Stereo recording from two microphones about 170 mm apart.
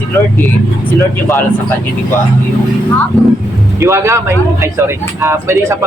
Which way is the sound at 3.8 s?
15° right (ahead or behind).